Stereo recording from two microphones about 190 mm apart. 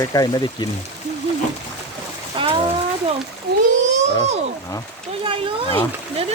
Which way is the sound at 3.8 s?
40° right (ahead or behind).